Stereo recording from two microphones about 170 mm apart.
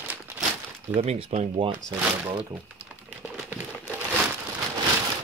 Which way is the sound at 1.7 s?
30° right (ahead or behind).